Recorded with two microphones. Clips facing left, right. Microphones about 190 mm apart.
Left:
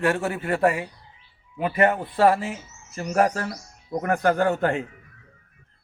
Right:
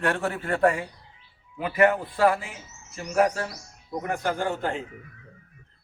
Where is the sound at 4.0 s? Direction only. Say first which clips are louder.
Left 6 dB; 60° left (ahead or behind).